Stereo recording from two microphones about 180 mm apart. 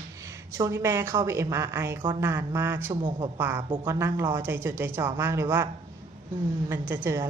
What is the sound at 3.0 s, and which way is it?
Speech, 25° right (ahead or behind).